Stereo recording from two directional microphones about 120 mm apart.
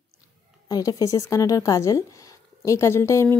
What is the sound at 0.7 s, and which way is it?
Speech, 30° left (ahead or behind).